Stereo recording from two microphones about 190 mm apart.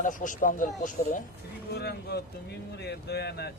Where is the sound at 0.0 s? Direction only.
45° left (ahead or behind).